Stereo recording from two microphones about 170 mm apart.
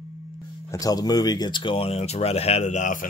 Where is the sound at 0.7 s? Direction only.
20° left (ahead or behind); by 3.0 s 45° left (ahead or behind).